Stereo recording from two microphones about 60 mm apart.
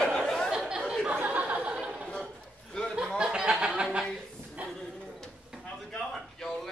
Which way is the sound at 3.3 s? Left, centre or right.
Centre.